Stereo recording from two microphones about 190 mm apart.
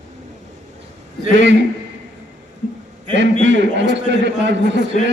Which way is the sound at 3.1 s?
70° right (ahead or behind).